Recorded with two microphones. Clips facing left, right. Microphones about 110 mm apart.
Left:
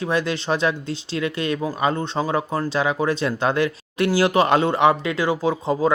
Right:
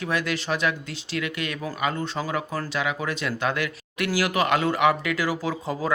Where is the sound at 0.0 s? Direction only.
30° left (ahead or behind).